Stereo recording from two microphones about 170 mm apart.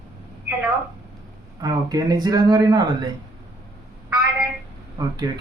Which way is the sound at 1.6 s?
20° right (ahead or behind).